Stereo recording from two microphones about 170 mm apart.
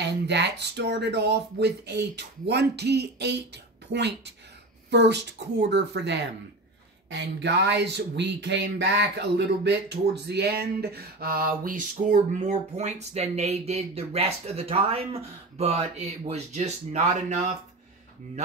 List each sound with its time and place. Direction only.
0.3 s a woman's voice: 80° right; by 17.6 s 40° right (ahead or behind)